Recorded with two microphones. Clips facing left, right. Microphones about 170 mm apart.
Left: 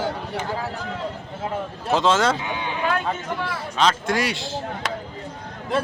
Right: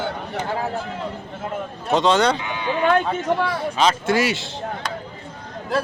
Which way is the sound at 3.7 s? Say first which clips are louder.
Right 1 dB; 5° right (ahead or behind).